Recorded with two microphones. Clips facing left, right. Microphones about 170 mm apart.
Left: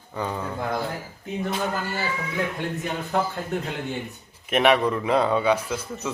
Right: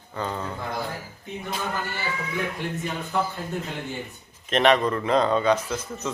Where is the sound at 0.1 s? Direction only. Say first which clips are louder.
Left 1 dB; 10° left (ahead or behind).